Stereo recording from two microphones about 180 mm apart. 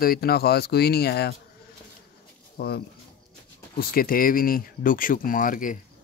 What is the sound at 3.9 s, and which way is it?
Speech, 55° left (ahead or behind).